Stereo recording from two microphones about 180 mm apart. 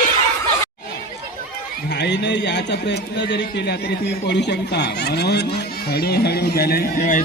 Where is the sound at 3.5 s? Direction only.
70° left (ahead or behind).